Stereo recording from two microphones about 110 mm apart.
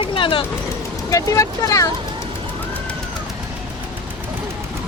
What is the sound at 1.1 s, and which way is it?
Speech, 30° left (ahead or behind).